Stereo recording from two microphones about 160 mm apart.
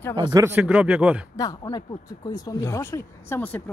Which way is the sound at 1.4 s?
25° left (ahead or behind).